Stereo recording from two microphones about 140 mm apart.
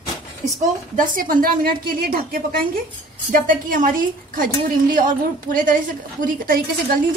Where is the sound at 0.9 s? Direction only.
85° right.